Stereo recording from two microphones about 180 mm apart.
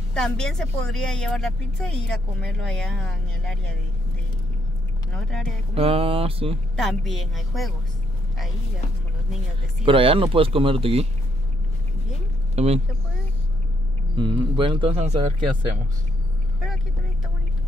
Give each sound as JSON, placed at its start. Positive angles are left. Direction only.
{"t": 0.1, "sound": "speech", "side_deg": 5}
{"t": 5.1, "sound": "speech", "side_deg": 0}
{"t": 5.8, "sound": "speech", "side_deg": -30}
{"t": 6.8, "sound": "speech", "side_deg": 0}
{"t": 9.8, "sound": "speech", "side_deg": -30}
{"t": 12.5, "sound": "speech", "side_deg": -35}
{"t": 14.1, "sound": "speech", "side_deg": -25}